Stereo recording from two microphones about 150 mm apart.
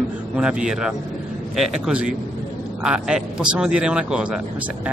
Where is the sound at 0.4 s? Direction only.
5° right (ahead or behind).